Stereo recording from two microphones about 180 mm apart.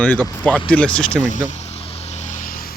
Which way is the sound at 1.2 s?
45° left (ahead or behind).